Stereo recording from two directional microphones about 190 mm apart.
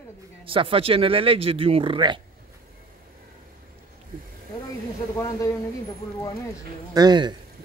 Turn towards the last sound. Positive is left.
turn(degrees=-20)  # may be behind; listen again after turning